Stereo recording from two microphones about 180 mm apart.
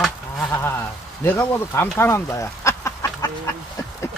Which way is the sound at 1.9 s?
15° left (ahead or behind).